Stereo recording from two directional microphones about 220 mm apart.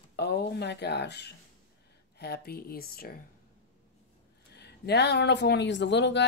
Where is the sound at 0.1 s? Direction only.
50° left (ahead or behind).